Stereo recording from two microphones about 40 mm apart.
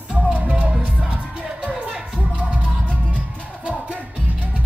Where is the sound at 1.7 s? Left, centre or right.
Centre.